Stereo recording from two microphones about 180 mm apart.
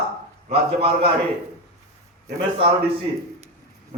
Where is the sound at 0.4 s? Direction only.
35° right (ahead or behind).